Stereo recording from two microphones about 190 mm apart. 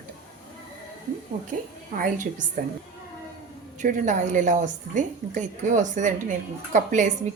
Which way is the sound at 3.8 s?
45° right (ahead or behind).